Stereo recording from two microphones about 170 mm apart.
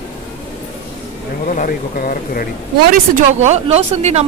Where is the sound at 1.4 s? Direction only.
50° left (ahead or behind).